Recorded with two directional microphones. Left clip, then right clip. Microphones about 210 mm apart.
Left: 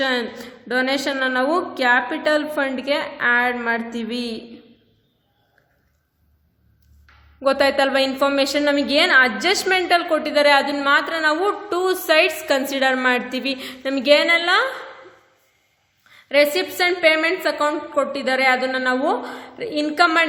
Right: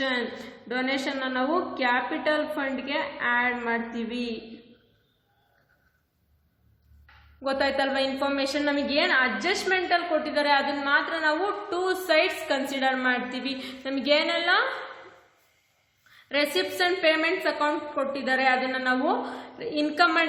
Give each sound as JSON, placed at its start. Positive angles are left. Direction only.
{"t": 0.0, "sound": "a woman's voice", "side_deg": 45}
{"t": 7.4, "sound": "a woman's voice", "side_deg": 40}
{"t": 16.0, "sound": "a woman's voice", "side_deg": 30}